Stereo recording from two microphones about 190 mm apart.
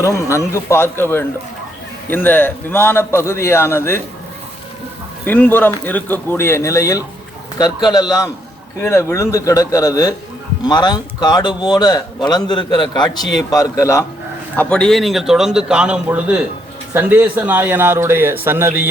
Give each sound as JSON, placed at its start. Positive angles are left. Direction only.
{"t": 0.0, "sound": "a man's voice", "side_deg": 15}
{"t": 5.2, "sound": "a man's voice", "side_deg": 10}